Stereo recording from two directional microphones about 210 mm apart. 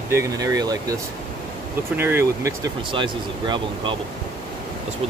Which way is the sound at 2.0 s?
10° right (ahead or behind).